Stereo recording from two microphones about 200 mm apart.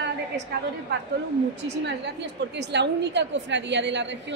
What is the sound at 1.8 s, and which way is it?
A woman's voice, 60° right (ahead or behind).